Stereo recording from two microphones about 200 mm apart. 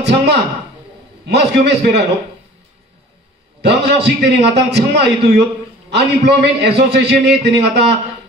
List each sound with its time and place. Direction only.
0.0 s a man's voice: 60° right (ahead or behind)
3.6 s a man's voice: 55° right (ahead or behind)